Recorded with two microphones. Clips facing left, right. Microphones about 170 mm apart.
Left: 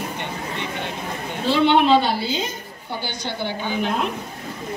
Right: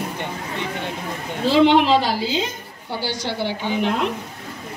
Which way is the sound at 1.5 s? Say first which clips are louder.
Right 1 dB; 90° right.